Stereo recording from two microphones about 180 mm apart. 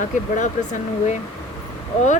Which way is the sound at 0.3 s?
45° left (ahead or behind).